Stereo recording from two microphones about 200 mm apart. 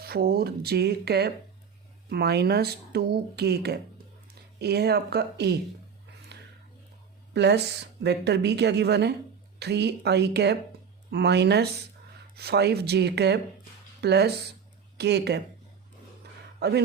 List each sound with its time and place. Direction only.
0.0 s speech: 50° right (ahead or behind)
7.3 s a woman's voice: 60° right (ahead or behind)
16.6 s speech: 55° right (ahead or behind)